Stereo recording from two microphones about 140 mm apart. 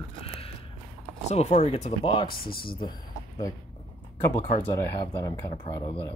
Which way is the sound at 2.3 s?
90° left.